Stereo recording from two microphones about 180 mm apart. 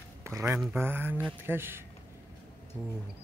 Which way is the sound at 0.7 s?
10° right (ahead or behind).